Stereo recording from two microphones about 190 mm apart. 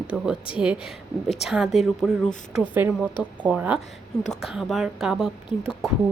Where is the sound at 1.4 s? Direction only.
Centre (ahead or behind).